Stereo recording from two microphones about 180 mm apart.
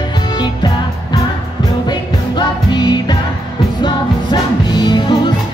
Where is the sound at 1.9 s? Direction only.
25° left (ahead or behind).